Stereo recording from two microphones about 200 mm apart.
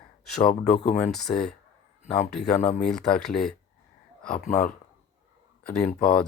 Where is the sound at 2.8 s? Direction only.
5° left (ahead or behind).